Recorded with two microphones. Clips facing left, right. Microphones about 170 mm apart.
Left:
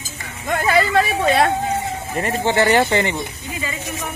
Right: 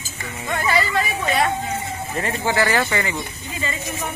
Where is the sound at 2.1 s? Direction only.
25° left (ahead or behind).